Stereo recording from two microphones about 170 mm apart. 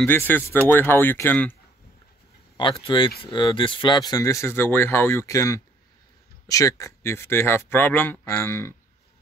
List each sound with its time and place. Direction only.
0.0 s speech: 10° left (ahead or behind)
3.2 s speech: 30° left (ahead or behind)